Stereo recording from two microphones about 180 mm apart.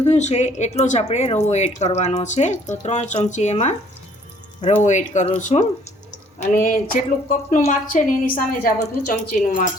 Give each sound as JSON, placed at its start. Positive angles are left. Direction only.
{"t": 0.0, "sound": "a woman's voice", "side_deg": 40}